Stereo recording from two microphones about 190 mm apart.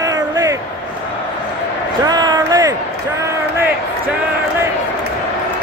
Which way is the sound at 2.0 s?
20° right (ahead or behind).